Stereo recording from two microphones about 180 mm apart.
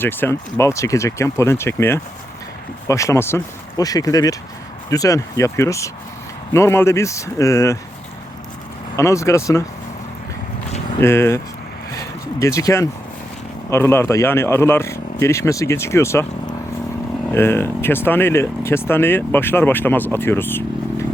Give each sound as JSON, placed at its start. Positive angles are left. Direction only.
{"t": 0.0, "sound": "speech", "side_deg": 10}
{"t": 9.0, "sound": "speech", "side_deg": 15}
{"t": 11.0, "sound": "speech", "side_deg": 15}
{"t": 11.9, "sound": "a sound", "side_deg": 15}
{"t": 13.7, "sound": "speech", "side_deg": 15}